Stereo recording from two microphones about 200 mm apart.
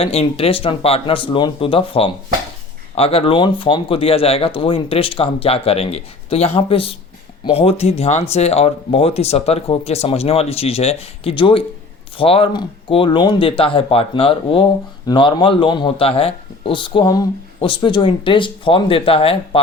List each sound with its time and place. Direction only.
0.0 s speech: 30° left (ahead or behind)